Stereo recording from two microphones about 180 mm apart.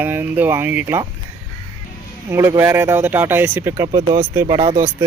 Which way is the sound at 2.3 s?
15° right (ahead or behind).